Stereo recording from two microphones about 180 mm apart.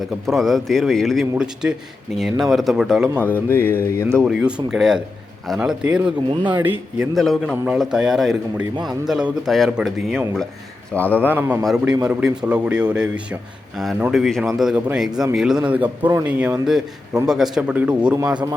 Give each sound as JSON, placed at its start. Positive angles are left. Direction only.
{"t": 0.3, "sound": "a man's voice", "side_deg": 0}
{"t": 3.2, "sound": "mantra", "side_deg": 10}
{"t": 4.2, "sound": "a man's voice", "side_deg": -5}
{"t": 6.3, "sound": "speech", "side_deg": -25}
{"t": 6.6, "sound": "a man's voice", "side_deg": -10}
{"t": 7.2, "sound": "a man's voice", "side_deg": 0}
{"t": 10.9, "sound": "mantra", "side_deg": 10}
{"t": 11.3, "sound": "a man's voice", "side_deg": -10}